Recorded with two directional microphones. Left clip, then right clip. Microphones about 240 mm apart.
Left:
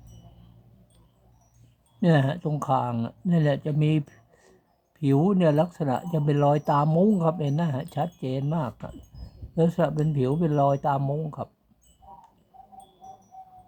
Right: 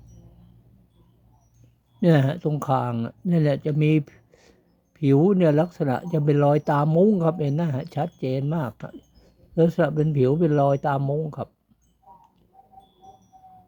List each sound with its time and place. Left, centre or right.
2.0 s speech: centre